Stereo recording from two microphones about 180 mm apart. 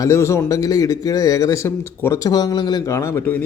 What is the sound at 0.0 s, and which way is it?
A man's voice, 15° left (ahead or behind).